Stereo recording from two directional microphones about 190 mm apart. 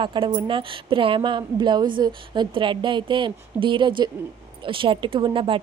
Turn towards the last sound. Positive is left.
turn(degrees=-25)  # may be behind; listen again after turning